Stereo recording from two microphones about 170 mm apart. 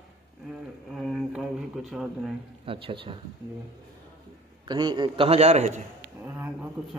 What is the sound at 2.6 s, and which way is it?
Speech, 30° right (ahead or behind).